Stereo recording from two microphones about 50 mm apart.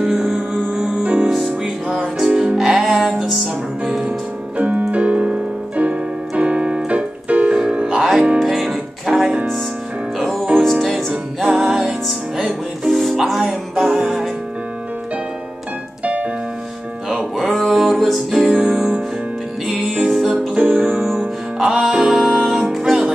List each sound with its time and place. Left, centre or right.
0.0 s music: centre
1.0 s music: centre
4.6 s keyboard: right
8.4 s music: centre
13.4 s music: centre
16.0 s music: right
17.4 s music: centre
18.7 s music: centre
20.1 s music: centre
20.5 s music: right
21.5 s music: centre